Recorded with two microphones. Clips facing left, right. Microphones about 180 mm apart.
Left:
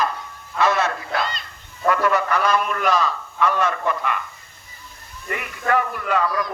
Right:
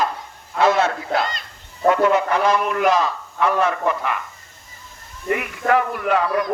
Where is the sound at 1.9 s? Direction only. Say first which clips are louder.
Right 3 dB; 25° right (ahead or behind).